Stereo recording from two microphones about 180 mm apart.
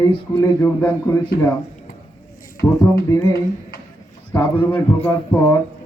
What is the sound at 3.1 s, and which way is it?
A man's voice, 20° left (ahead or behind).